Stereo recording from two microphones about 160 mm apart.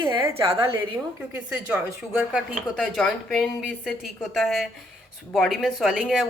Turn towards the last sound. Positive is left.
turn(degrees=0)  # may be behind; listen again after turning